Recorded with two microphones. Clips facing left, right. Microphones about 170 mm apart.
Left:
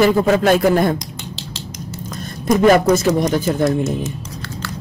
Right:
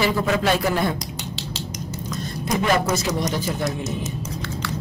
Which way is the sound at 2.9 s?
50° left (ahead or behind).